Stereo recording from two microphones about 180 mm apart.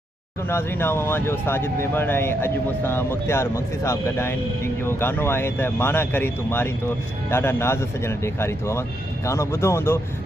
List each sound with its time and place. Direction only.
0.5 s speech: 15° left (ahead or behind)